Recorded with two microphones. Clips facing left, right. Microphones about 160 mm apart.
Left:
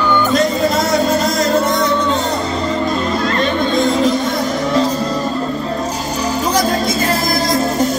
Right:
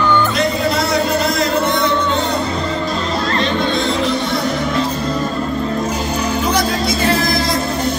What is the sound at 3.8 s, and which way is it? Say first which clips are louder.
Music: left 4 dB; 45° left (ahead or behind).